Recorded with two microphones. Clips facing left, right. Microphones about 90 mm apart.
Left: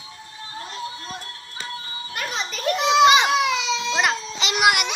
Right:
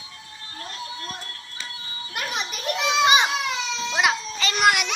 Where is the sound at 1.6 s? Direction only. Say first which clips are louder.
Left 6 dB; 40° left (ahead or behind).